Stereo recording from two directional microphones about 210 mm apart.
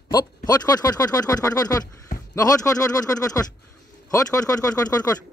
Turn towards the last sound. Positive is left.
turn(degrees=15)  # may be behind; listen again after turning